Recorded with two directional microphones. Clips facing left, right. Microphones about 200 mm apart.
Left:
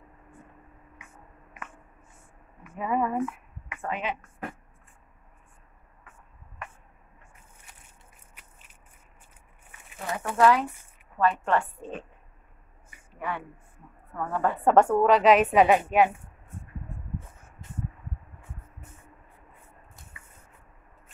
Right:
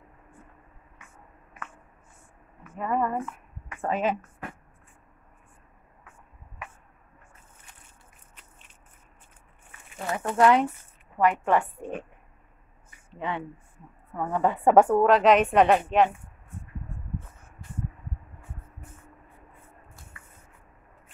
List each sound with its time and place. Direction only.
2.8 s a woman's voice: 5° left (ahead or behind)
3.8 s speech: 40° right (ahead or behind)
6.6 s a sound: 5° right (ahead or behind)
8.4 s a sound: 10° left (ahead or behind)
10.1 s a woman's voice: 20° right (ahead or behind)
13.2 s a woman's voice: 20° right (ahead or behind); by 16.1 s 5° left (ahead or behind)